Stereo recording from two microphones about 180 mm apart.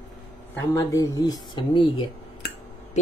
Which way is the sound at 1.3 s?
25° left (ahead or behind).